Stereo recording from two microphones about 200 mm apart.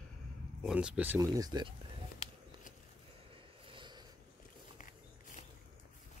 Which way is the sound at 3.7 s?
25° right (ahead or behind).